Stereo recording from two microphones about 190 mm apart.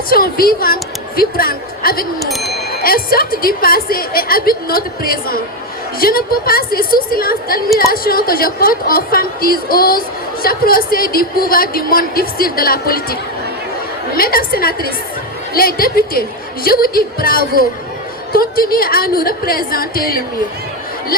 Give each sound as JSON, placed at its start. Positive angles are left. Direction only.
{"t": 0.1, "sound": "speech", "side_deg": 50}
{"t": 14.2, "sound": "speech", "side_deg": 50}